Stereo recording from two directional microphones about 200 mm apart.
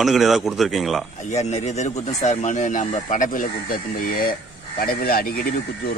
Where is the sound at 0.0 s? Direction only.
Centre (ahead or behind).